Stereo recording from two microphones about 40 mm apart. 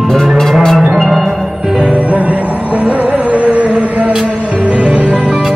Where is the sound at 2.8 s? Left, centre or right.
Right.